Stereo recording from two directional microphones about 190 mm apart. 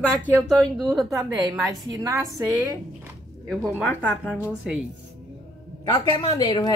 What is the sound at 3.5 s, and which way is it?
Speech, 5° right (ahead or behind).